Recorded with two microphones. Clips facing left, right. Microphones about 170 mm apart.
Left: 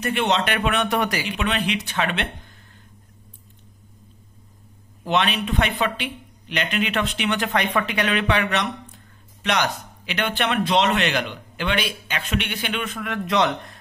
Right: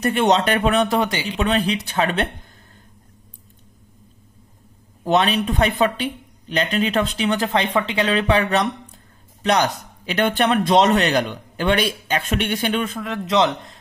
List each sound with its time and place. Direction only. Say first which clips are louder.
0.0 s speech: right 5 dB; 40° right (ahead or behind)
5.0 s speech: right 4 dB; 40° right (ahead or behind)
13.0 s a man's voice: right 1 dB; 25° right (ahead or behind)